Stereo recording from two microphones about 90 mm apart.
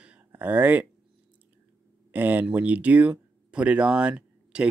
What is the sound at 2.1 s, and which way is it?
Speech, 20° right (ahead or behind).